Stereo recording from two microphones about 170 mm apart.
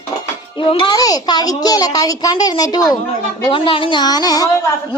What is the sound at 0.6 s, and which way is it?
A man's voice, 30° left (ahead or behind).